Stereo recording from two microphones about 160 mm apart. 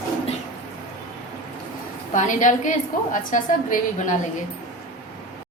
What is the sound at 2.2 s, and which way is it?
A woman's voice, 50° left (ahead or behind).